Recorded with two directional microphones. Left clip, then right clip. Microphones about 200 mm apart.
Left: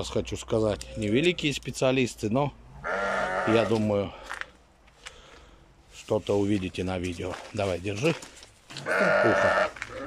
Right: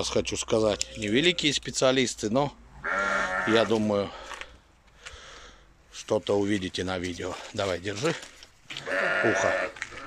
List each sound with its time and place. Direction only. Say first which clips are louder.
0.0 s speech: right 3 dB; centre (ahead or behind)
2.8 s goat: right 1 dB; 35° left (ahead or behind)
3.5 s speech: right 2 dB; 5° left (ahead or behind)
5.0 s a sound: right 2 dB; 5° left (ahead or behind)
6.0 s speech: even; 5° left (ahead or behind)
8.8 s speech: left 3 dB; 60° left (ahead or behind)